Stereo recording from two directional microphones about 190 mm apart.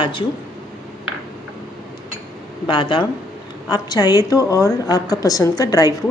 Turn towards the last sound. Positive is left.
turn(degrees=20)  # may be behind; listen again after turning